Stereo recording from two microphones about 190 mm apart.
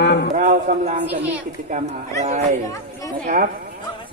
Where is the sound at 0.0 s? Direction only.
65° left (ahead or behind).